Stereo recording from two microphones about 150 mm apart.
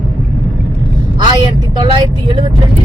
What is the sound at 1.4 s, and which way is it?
Speech, 30° right (ahead or behind).